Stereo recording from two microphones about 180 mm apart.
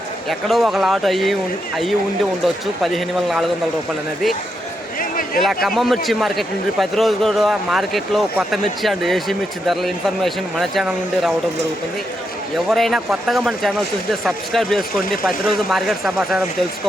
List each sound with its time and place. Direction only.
0.3 s a man's voice: centre (ahead or behind)
4.9 s a sound: 50° left (ahead or behind)
5.6 s a man's voice: centre (ahead or behind)
12.7 s a man's voice: centre (ahead or behind)